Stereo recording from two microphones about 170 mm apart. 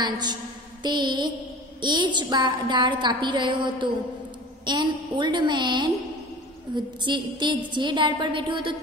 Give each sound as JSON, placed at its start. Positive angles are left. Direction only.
{"t": 0.0, "sound": "a woman's voice", "side_deg": -25}